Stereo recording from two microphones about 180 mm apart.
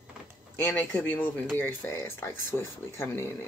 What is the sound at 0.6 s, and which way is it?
Speech, 10° left (ahead or behind).